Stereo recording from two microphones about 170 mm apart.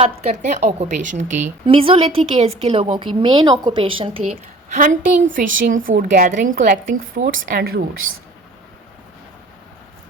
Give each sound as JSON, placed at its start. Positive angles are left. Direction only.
{"t": 0.0, "sound": "a woman's voice", "side_deg": -40}
{"t": 1.6, "sound": "a woman's voice", "side_deg": -30}
{"t": 4.3, "sound": "a woman's voice", "side_deg": -45}